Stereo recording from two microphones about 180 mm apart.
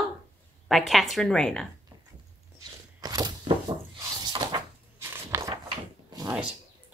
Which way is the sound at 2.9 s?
20° right (ahead or behind).